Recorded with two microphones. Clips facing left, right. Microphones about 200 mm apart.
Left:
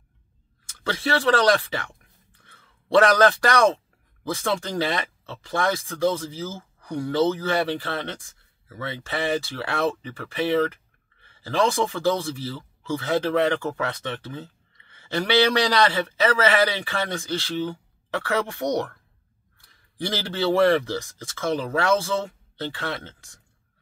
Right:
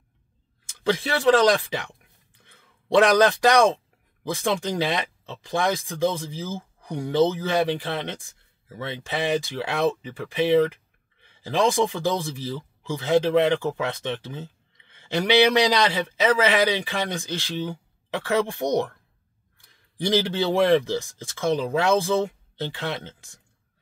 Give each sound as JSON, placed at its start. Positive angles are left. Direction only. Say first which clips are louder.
{"t": 0.8, "sound": "a man's voice", "louder": "right 3 dB", "side_deg": -15}
{"t": 2.4, "sound": "a sound", "louder": "right 2 dB", "side_deg": -15}
{"t": 4.2, "sound": "a man's voice", "louder": "right 1 dB", "side_deg": -15}
{"t": 20.0, "sound": "a man's voice", "louder": "right 4 dB", "side_deg": -15}